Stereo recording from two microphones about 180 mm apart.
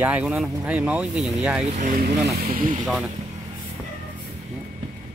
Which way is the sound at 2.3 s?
55° right (ahead or behind).